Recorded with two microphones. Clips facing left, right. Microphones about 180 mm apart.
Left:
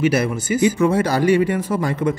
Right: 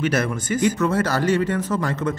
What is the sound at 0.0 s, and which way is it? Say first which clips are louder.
Speech: left 4 dB; 10° left (ahead or behind).